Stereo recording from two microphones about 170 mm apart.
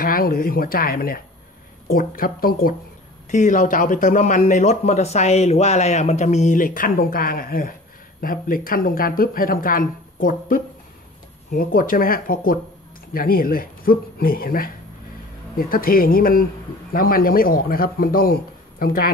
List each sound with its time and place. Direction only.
0.0 s speech: 55° left (ahead or behind)
3.3 s speech: 45° left (ahead or behind)